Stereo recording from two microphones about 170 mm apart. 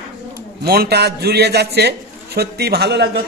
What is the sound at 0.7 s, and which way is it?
A man's voice, 70° right (ahead or behind).